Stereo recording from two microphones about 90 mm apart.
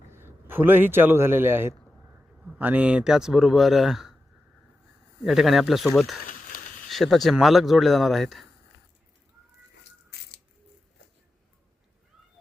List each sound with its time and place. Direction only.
0.1 s a man's voice: 25° right (ahead or behind)
2.3 s speech: 15° right (ahead or behind)
5.2 s speech: centre (ahead or behind)
6.9 s speech: 5° left (ahead or behind)